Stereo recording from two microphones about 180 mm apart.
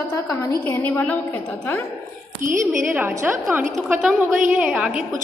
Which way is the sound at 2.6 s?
10° right (ahead or behind).